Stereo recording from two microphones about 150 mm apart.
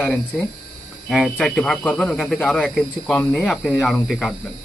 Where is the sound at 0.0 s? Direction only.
10° left (ahead or behind).